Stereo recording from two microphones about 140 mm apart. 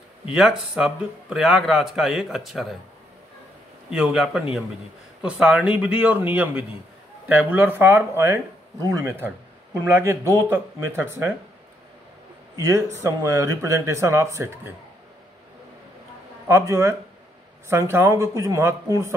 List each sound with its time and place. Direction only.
0.3 s a man's voice: 5° right (ahead or behind)
3.9 s a man's voice: 5° right (ahead or behind)
12.5 s speech: 20° right (ahead or behind)
16.4 s speech: 20° right (ahead or behind)